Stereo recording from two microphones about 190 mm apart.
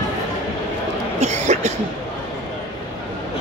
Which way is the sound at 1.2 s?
35° right (ahead or behind).